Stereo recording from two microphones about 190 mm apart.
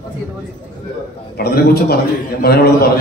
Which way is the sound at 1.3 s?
55° left (ahead or behind).